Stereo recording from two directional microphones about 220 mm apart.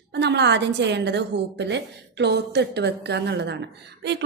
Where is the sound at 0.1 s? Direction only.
50° right (ahead or behind).